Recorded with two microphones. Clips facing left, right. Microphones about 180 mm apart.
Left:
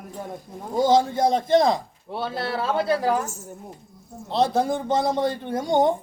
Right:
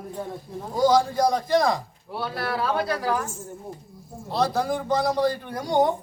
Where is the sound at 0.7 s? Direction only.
25° left (ahead or behind).